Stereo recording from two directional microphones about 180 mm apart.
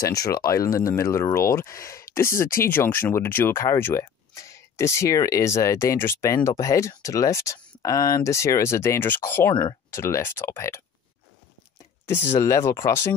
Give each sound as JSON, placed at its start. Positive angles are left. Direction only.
{"t": 0.0, "sound": "speech", "side_deg": 20}
{"t": 12.1, "sound": "speech", "side_deg": 15}